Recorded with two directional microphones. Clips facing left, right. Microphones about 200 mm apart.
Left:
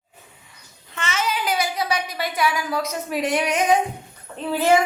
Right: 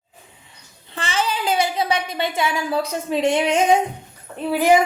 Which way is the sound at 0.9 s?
30° right (ahead or behind).